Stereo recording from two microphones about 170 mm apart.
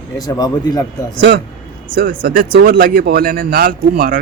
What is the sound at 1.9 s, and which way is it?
Speech, 55° right (ahead or behind).